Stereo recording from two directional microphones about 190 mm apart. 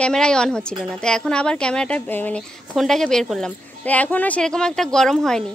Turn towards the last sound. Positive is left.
turn(degrees=0)  # may be behind; listen again after turning